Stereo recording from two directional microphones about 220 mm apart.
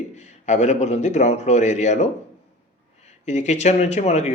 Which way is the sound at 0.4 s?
30° left (ahead or behind).